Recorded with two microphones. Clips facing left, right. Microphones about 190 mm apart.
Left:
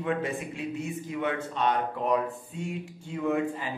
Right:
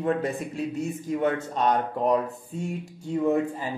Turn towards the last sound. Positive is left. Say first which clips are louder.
# right 4 dB
turn(degrees=-40)  # may be behind; listen again after turning